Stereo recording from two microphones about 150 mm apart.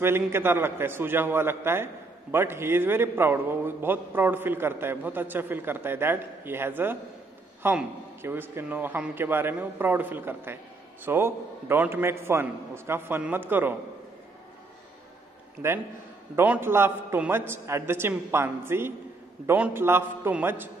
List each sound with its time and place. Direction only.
0.0 s a man's voice: 15° right (ahead or behind)
15.6 s a man's voice: 15° right (ahead or behind)